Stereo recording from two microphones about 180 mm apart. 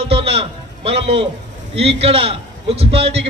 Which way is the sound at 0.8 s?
30° right (ahead or behind).